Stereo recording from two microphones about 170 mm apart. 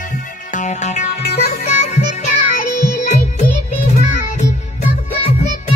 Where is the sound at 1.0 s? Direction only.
40° left (ahead or behind).